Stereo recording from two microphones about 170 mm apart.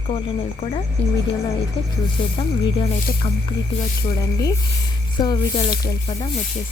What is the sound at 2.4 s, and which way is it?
Speech, 30° left (ahead or behind).